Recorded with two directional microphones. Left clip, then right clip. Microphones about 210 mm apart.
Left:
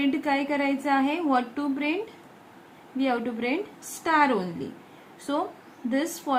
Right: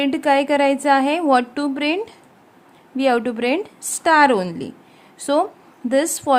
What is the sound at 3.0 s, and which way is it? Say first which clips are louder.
A woman's voice: right 9 dB; 55° right (ahead or behind).